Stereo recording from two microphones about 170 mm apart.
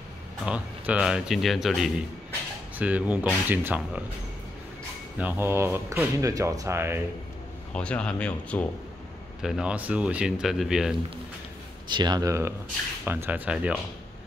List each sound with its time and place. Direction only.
0.5 s speech: 5° right (ahead or behind)
5.2 s speech: 15° right (ahead or behind)
7.7 s speech: 5° left (ahead or behind)
9.4 s speech: 5° right (ahead or behind)
11.9 s speech: 25° right (ahead or behind); by 13.7 s 10° right (ahead or behind)